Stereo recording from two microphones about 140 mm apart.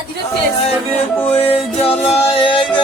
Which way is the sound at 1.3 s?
40° left (ahead or behind).